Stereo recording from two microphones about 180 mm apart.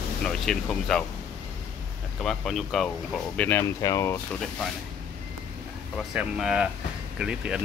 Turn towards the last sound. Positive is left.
turn(degrees=-5)  # may be behind; listen again after turning